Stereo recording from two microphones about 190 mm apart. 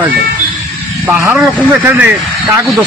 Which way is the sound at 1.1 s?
10° right (ahead or behind).